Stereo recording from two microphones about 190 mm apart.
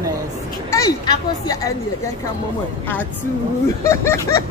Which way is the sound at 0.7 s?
20° left (ahead or behind).